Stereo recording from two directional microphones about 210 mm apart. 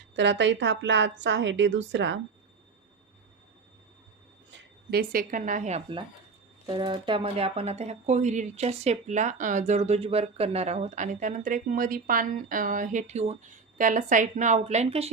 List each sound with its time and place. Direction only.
0.2 s a woman's voice: 60° right (ahead or behind)
4.5 s speech: 50° right (ahead or behind); by 15.1 s 30° right (ahead or behind)